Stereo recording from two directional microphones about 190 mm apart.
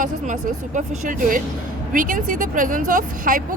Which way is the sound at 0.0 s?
40° right (ahead or behind).